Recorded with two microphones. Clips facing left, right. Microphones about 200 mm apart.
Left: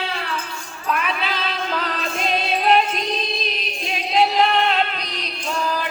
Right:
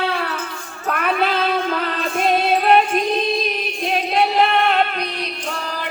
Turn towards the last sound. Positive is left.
turn(degrees=-55)  # may be behind; listen again after turning